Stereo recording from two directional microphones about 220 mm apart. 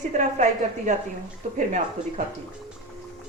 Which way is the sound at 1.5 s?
35° right (ahead or behind).